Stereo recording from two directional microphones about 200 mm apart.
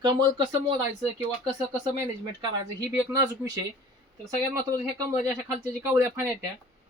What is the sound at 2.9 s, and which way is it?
Speech, 10° right (ahead or behind).